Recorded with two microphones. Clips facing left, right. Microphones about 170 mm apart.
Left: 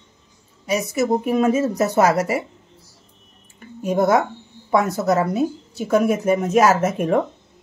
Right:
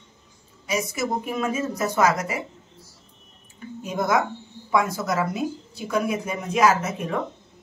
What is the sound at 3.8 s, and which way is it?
Speech, 35° left (ahead or behind).